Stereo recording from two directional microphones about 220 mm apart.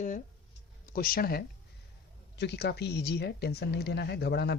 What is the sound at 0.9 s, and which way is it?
Speech, 40° left (ahead or behind).